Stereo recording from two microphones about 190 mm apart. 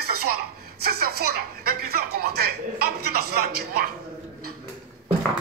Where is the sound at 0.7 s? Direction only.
55° right (ahead or behind).